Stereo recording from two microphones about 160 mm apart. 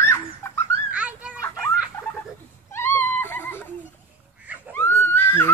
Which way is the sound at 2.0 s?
15° left (ahead or behind).